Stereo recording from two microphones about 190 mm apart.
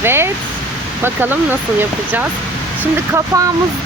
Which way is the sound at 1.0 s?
10° right (ahead or behind).